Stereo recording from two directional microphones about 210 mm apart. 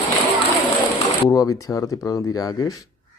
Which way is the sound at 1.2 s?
15° left (ahead or behind).